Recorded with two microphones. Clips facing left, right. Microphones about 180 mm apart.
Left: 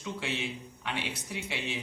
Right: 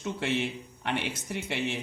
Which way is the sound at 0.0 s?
55° right (ahead or behind).